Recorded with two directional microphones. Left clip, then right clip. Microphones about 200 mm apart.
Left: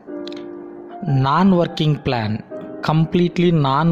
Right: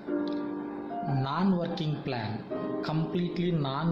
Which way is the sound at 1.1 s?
50° left (ahead or behind).